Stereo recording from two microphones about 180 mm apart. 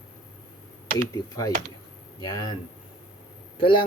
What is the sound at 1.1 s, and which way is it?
Speech, 20° left (ahead or behind).